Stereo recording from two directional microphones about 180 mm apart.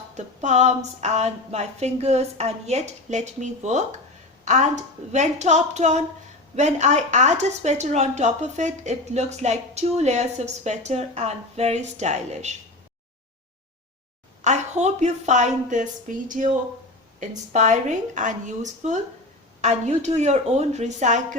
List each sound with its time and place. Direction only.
0.1 s speech: 40° right (ahead or behind)
14.4 s speech: 40° right (ahead or behind)